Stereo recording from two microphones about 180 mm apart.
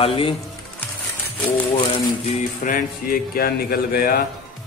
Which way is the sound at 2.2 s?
45° left (ahead or behind).